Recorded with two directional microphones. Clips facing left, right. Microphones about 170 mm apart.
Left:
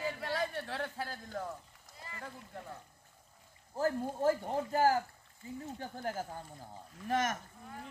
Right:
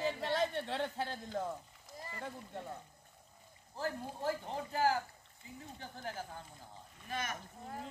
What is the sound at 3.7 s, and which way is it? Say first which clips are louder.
Speech: left 7 dB; 45° left (ahead or behind).